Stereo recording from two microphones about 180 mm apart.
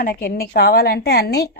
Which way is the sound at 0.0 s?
55° left (ahead or behind).